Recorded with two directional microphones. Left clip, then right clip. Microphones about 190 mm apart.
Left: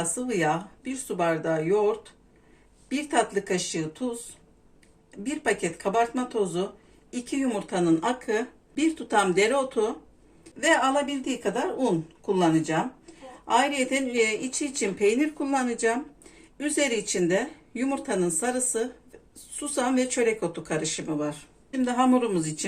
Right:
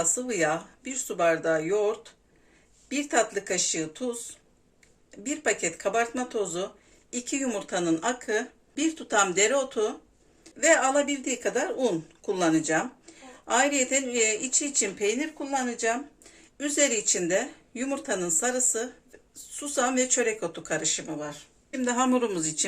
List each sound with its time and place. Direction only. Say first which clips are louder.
0.0 s speech: even; 20° right (ahead or behind)
2.9 s speech: left 1 dB; 20° right (ahead or behind)
5.1 s speech: left 1 dB; 25° right (ahead or behind)
10.6 s speech: even; 25° right (ahead or behind); by 21.4 s centre (ahead or behind)
21.8 s speech: left 2 dB; 20° right (ahead or behind)